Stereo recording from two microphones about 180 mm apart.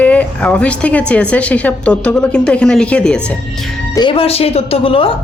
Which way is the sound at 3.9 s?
30° left (ahead or behind).